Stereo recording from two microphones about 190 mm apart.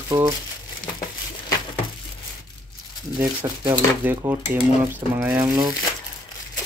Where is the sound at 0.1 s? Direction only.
30° right (ahead or behind).